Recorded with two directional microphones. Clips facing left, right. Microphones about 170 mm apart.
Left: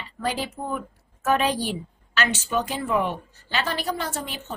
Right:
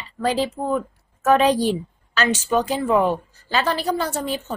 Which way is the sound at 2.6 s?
35° right (ahead or behind).